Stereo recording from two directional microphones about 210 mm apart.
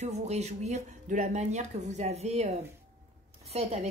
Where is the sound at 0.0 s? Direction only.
30° right (ahead or behind).